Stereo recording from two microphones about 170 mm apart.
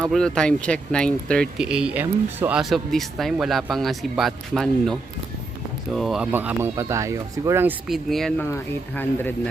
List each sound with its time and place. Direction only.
0.0 s speech: 5° left (ahead or behind)
1.6 s speech: 5° right (ahead or behind)
6.3 s speech: 15° right (ahead or behind)
7.9 s speech: centre (ahead or behind)
8.4 s speech: 15° left (ahead or behind)